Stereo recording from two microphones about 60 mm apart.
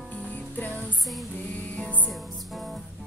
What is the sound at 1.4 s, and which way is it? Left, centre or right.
Music, left.